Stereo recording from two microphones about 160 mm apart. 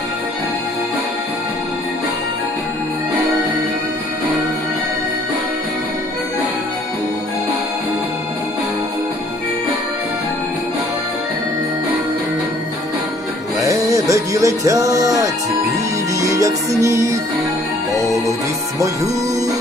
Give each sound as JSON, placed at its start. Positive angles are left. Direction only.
{"t": 13.6, "sound": "music", "side_deg": -20}